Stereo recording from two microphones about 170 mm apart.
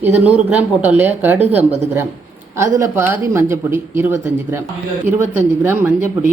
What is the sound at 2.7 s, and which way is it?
Speech, 15° right (ahead or behind).